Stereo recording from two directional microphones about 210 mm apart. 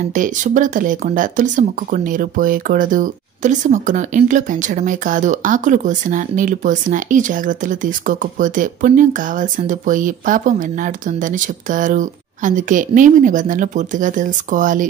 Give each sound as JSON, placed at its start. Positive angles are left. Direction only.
{"t": 0.1, "sound": "speech", "side_deg": -40}